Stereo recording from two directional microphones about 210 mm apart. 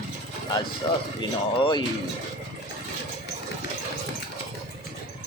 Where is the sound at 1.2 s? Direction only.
20° left (ahead or behind).